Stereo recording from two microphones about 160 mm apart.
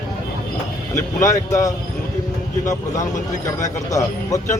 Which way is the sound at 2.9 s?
20° left (ahead or behind).